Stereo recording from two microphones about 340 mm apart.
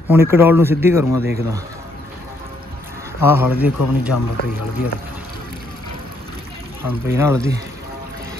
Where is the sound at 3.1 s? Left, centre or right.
Centre.